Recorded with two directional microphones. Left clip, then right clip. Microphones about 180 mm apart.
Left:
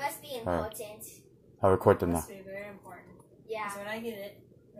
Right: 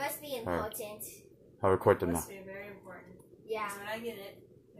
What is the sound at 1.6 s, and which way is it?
Speech, 35° left (ahead or behind).